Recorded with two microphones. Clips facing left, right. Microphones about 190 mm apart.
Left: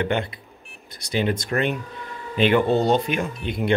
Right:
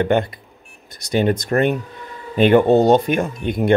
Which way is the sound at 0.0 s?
45° right (ahead or behind).